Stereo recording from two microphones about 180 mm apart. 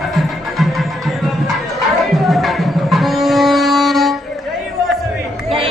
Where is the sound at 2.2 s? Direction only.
Centre (ahead or behind).